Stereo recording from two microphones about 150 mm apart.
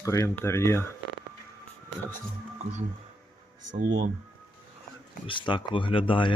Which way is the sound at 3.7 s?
60° right (ahead or behind).